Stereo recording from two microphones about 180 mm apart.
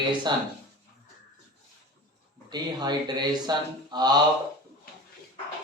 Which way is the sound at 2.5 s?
25° right (ahead or behind).